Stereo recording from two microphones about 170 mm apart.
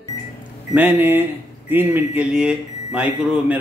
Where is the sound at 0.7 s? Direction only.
10° right (ahead or behind).